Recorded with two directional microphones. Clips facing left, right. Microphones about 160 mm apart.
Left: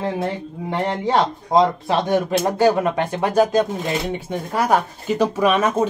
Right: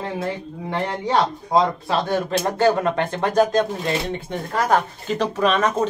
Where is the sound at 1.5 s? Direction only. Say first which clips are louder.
Left 3 dB; 15° left (ahead or behind).